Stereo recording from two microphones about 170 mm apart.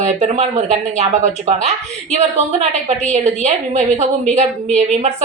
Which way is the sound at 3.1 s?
40° right (ahead or behind).